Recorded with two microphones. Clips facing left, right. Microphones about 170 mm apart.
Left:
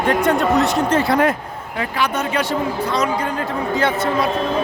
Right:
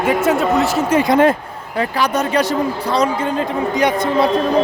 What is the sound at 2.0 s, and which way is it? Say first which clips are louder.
Speech: right 3 dB; 40° right (ahead or behind).